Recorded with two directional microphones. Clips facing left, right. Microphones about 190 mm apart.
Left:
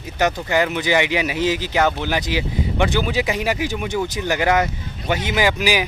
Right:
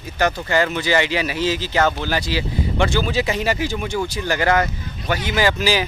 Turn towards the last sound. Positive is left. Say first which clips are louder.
# even
turn(degrees=15)  # may be behind; listen again after turning